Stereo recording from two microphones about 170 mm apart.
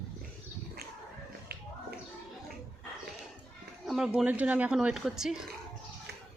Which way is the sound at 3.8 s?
Centre (ahead or behind).